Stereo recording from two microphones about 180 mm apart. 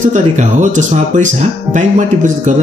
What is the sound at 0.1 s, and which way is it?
Speech, 40° right (ahead or behind).